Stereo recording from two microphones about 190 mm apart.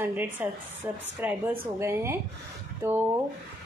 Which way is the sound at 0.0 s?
10° right (ahead or behind).